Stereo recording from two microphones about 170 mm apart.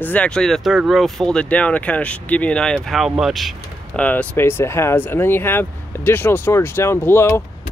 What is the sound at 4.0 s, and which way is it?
Speech, 10° left (ahead or behind).